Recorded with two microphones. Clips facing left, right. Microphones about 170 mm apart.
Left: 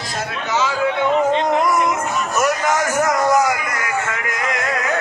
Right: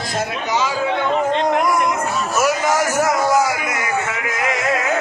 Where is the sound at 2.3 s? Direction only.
5° right (ahead or behind).